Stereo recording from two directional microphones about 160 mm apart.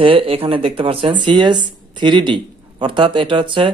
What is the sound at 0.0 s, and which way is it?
A man's voice, 35° right (ahead or behind).